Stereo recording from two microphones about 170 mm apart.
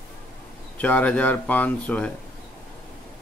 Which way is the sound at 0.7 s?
10° left (ahead or behind).